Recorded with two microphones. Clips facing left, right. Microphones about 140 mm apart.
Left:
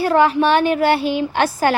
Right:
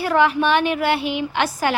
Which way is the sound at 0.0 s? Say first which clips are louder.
Left 3 dB; 35° left (ahead or behind).